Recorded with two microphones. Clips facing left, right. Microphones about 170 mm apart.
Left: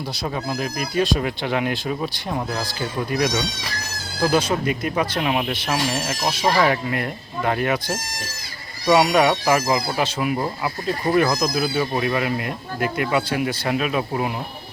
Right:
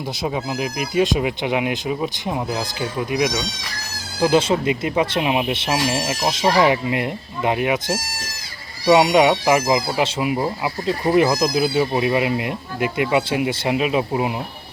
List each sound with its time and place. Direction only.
0.2 s speech: 15° right (ahead or behind)
4.2 s speech: 25° right (ahead or behind)
5.7 s speech: 10° right (ahead or behind)
10.8 s speech: 25° right (ahead or behind)